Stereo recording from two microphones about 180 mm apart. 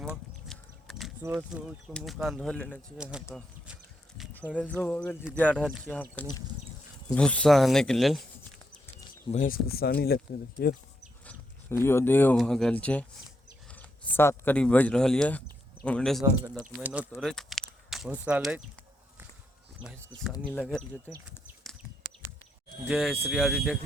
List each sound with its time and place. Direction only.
0.4 s a sound: centre (ahead or behind)
1.3 s speech: 5° right (ahead or behind)
3.0 s speech: 5° right (ahead or behind)
4.8 s speech: 5° left (ahead or behind)
9.3 s speech: 50° left (ahead or behind)
11.3 s a sound: 15° left (ahead or behind)
12.4 s speech: 5° left (ahead or behind)
16.7 s speech: 5° right (ahead or behind)
20.3 s speech: 10° left (ahead or behind)
22.9 s speech: 5° right (ahead or behind)